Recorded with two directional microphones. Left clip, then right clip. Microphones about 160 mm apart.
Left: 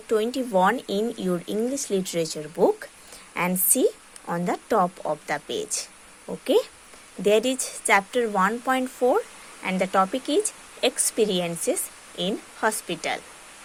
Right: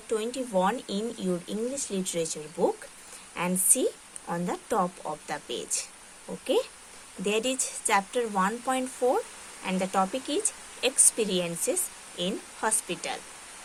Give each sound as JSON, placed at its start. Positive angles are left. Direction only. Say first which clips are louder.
{"t": 0.1, "sound": "speech", "louder": "left 6 dB", "side_deg": 40}